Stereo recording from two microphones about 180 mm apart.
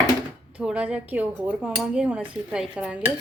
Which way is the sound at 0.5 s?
5° right (ahead or behind).